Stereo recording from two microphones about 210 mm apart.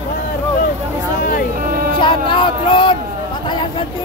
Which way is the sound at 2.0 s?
25° left (ahead or behind).